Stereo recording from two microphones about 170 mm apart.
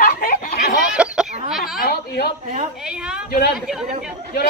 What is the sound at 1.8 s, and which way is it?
Speech, 70° left (ahead or behind).